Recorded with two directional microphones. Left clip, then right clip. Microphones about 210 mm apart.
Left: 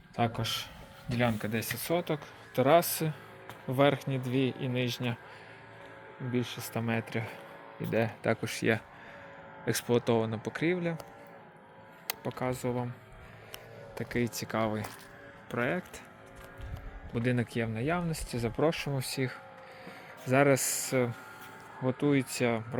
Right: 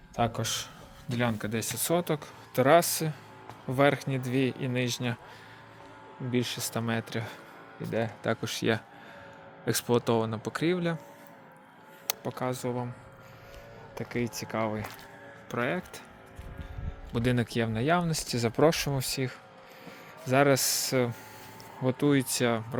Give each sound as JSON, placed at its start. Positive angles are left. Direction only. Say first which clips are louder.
{"t": 0.2, "sound": "speech", "louder": "right 2 dB", "side_deg": -10}
{"t": 6.3, "sound": "speech", "louder": "right 4 dB", "side_deg": -25}
{"t": 12.2, "sound": "speech", "louder": "even", "side_deg": -5}
{"t": 13.9, "sound": "speech", "louder": "even", "side_deg": 0}
{"t": 17.2, "sound": "speech", "louder": "right 3 dB", "side_deg": -20}
{"t": 18.9, "sound": "speech", "louder": "right 2 dB", "side_deg": -10}
{"t": 21.8, "sound": "speech", "louder": "right 3 dB", "side_deg": -25}